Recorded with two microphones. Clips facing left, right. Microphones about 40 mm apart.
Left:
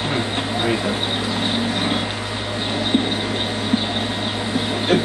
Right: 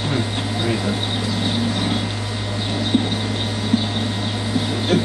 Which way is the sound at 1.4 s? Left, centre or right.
Left.